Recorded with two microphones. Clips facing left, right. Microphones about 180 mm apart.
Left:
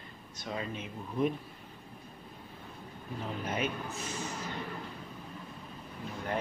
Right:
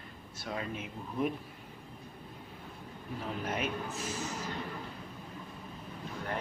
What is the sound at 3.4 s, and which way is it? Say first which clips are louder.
Speech: left 1 dB; centre (ahead or behind).